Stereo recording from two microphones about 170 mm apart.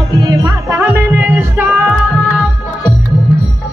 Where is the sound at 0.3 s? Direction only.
20° right (ahead or behind).